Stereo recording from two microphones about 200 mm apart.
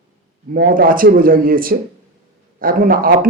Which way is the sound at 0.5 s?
50° right (ahead or behind).